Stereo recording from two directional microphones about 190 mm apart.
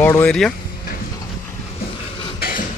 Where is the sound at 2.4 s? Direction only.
50° left (ahead or behind).